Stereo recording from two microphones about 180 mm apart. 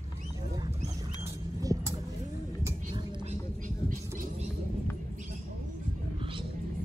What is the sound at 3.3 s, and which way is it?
Mouse, 45° right (ahead or behind).